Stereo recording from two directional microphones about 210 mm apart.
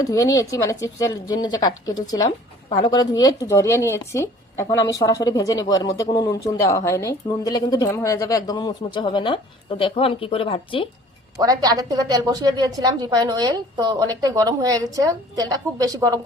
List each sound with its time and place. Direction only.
0.0 s speech: 15° left (ahead or behind)
11.3 s a woman's voice: 15° right (ahead or behind)